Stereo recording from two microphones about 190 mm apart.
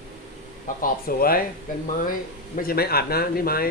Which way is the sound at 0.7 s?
45° left (ahead or behind).